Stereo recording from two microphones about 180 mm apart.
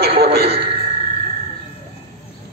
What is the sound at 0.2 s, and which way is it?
Music, 65° right (ahead or behind).